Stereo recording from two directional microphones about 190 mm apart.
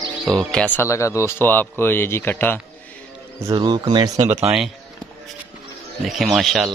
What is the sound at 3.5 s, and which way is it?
Speech, 25° right (ahead or behind).